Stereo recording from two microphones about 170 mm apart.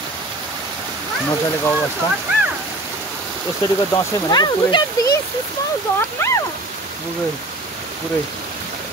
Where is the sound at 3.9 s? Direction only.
25° left (ahead or behind).